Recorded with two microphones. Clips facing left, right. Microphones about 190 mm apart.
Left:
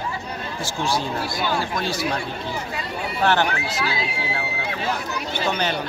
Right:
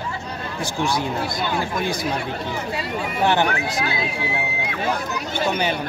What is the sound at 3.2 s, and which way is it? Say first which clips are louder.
Speech: right 1 dB; 15° right (ahead or behind).